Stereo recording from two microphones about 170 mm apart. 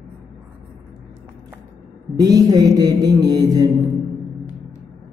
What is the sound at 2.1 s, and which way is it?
Mantra, 20° right (ahead or behind).